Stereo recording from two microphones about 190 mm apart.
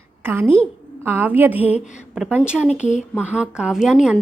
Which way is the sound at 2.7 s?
40° left (ahead or behind).